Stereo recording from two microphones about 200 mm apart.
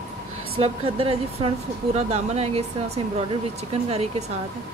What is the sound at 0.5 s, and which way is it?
A woman's voice, 30° right (ahead or behind).